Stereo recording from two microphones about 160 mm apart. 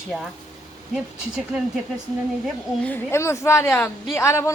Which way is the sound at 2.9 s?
15° left (ahead or behind).